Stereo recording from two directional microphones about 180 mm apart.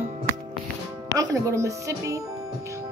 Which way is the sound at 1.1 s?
20° right (ahead or behind).